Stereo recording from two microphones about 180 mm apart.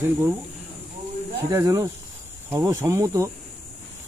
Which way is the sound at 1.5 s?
20° right (ahead or behind).